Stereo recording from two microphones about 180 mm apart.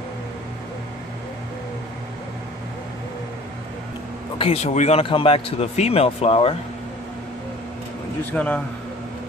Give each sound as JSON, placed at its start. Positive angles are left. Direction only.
{"t": 4.4, "sound": "speech", "side_deg": 35}
{"t": 8.3, "sound": "a man's voice", "side_deg": 5}